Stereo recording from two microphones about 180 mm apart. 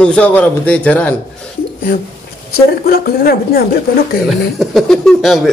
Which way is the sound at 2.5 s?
55° left (ahead or behind).